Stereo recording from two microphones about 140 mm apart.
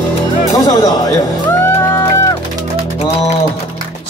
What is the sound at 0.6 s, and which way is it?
Music, 25° left (ahead or behind).